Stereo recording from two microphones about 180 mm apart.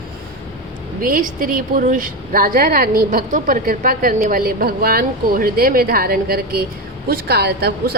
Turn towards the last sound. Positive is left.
turn(degrees=-60)  # may be behind; listen again after turning